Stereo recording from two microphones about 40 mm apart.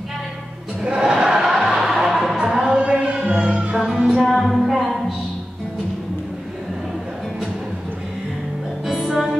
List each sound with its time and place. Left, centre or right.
0.8 s music: centre
3.0 s music: right
3.7 s music: centre
8.8 s music: centre